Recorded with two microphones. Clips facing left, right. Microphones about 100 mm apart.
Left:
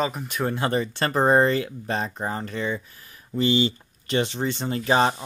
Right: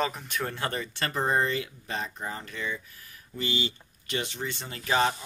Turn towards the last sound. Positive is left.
turn(degrees=35)  # may be behind; listen again after turning